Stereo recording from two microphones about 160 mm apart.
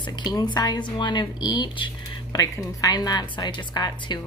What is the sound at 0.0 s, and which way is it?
A woman's voice, 30° left (ahead or behind).